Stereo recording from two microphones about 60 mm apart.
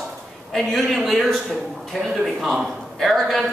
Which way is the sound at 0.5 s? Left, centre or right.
Centre.